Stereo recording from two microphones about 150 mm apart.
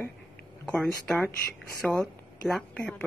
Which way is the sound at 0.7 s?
5° left (ahead or behind).